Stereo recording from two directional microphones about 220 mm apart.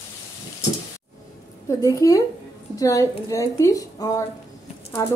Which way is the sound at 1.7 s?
15° left (ahead or behind).